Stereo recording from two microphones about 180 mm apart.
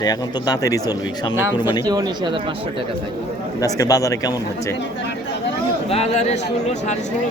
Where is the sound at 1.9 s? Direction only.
25° right (ahead or behind).